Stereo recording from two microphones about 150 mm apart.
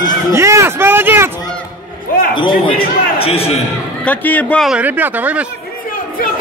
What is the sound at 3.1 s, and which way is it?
Speech, 40° left (ahead or behind).